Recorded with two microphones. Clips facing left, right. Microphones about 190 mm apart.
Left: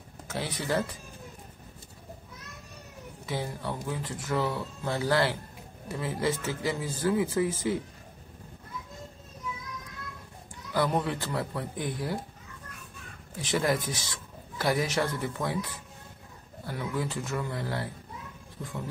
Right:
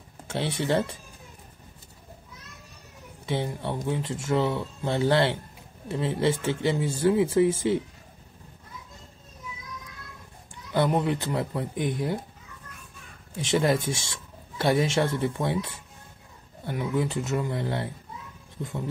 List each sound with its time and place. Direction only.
0.3 s speech: 25° right (ahead or behind)
3.3 s speech: 25° right (ahead or behind)
11.0 s speech: 20° right (ahead or behind)
13.4 s speech: 25° right (ahead or behind)